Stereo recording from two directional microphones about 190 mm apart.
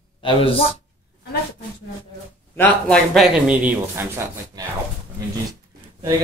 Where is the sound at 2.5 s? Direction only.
5° left (ahead or behind).